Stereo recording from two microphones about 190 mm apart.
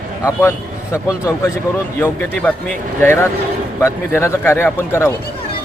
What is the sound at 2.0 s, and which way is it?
A man's voice, 10° left (ahead or behind).